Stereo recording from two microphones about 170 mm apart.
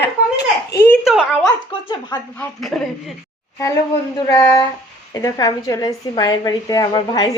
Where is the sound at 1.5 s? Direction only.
25° left (ahead or behind).